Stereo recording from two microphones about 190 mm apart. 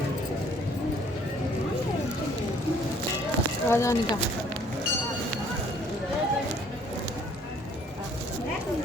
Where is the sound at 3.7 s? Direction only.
15° left (ahead or behind).